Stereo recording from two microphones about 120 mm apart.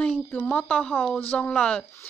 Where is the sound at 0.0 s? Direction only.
10° left (ahead or behind).